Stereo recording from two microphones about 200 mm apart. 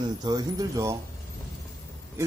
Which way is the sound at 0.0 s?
20° right (ahead or behind).